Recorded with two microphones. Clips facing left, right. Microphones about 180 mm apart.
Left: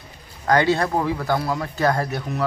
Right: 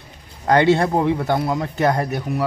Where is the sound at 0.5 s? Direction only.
25° right (ahead or behind).